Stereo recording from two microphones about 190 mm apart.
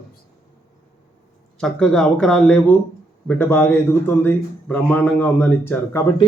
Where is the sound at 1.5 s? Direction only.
5° left (ahead or behind).